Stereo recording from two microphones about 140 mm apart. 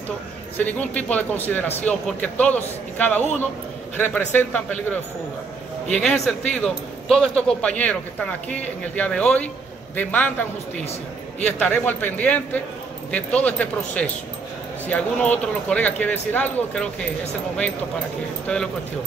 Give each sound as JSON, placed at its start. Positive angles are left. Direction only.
{"t": 0.6, "sound": "speech", "side_deg": 10}
{"t": 5.9, "sound": "speech", "side_deg": 5}
{"t": 10.8, "sound": "speech", "side_deg": 50}
{"t": 11.4, "sound": "speech", "side_deg": 10}
{"t": 18.5, "sound": "speech", "side_deg": 5}